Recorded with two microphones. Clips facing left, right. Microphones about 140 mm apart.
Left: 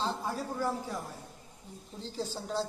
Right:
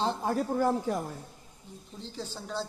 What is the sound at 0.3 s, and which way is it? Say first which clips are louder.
Speech: right 6 dB; 55° right (ahead or behind).